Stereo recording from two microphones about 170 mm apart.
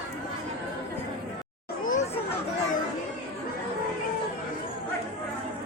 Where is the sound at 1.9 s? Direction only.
45° left (ahead or behind).